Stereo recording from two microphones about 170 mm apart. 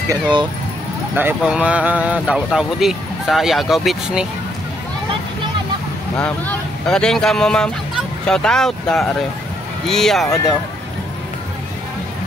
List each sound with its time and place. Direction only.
0.1 s speech: 25° right (ahead or behind)
1.1 s speech: 10° right (ahead or behind)
6.1 s speech: 10° left (ahead or behind)